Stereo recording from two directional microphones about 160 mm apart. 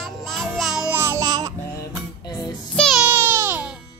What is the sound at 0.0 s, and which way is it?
Music, centre (ahead or behind).